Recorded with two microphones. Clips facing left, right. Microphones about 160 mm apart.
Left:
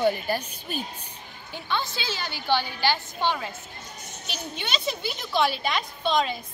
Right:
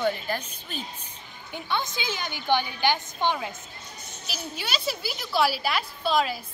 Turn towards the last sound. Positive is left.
turn(degrees=-5)  # may be behind; listen again after turning